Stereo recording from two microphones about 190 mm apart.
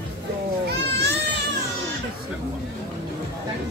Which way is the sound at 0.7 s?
60° right (ahead or behind).